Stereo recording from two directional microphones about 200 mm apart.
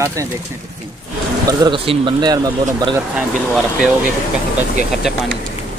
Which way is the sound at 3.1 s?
5° right (ahead or behind).